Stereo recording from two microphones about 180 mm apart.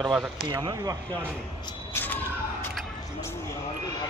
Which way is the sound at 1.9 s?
10° left (ahead or behind).